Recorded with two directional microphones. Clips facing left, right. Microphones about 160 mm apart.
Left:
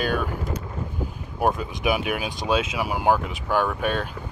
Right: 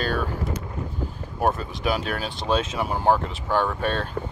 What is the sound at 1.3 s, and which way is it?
Speech, 10° left (ahead or behind).